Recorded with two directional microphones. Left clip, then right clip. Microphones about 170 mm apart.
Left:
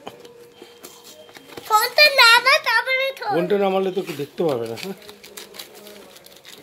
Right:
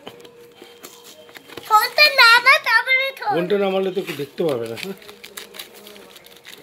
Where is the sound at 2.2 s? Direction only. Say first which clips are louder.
Right 4 dB; 30° left (ahead or behind).